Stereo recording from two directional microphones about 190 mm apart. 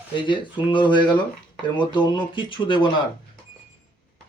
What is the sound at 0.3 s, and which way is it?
Speech, 25° left (ahead or behind).